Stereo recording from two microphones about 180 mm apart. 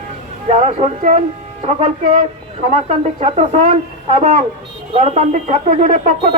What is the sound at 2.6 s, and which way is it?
Speech, 40° right (ahead or behind).